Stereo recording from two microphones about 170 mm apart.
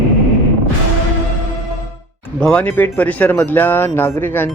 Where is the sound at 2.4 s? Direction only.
5° left (ahead or behind).